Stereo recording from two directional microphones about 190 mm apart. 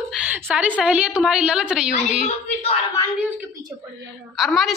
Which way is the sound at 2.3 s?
30° left (ahead or behind).